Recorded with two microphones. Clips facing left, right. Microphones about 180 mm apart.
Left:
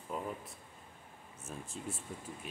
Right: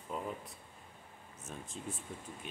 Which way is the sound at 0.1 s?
5° left (ahead or behind).